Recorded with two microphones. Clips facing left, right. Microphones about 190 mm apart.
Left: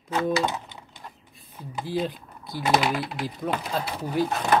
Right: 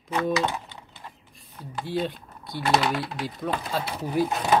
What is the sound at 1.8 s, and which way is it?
Speech, centre (ahead or behind).